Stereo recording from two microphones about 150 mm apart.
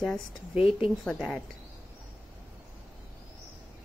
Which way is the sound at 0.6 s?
40° left (ahead or behind).